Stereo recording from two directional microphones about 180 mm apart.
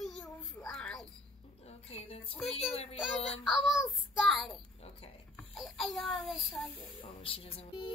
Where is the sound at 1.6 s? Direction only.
35° left (ahead or behind).